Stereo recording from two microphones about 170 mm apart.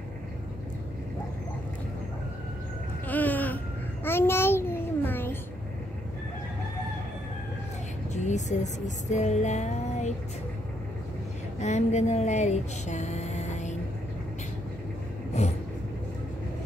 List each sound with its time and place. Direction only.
3.1 s babbling: 10° left (ahead or behind)
8.1 s speech: 45° left (ahead or behind)
11.6 s music: 40° left (ahead or behind)
15.3 s vehicle: 40° left (ahead or behind)